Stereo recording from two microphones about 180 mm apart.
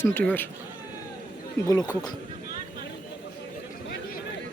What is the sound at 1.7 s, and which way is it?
Speech, 20° left (ahead or behind).